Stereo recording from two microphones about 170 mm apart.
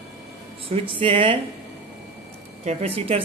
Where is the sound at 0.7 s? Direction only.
30° right (ahead or behind).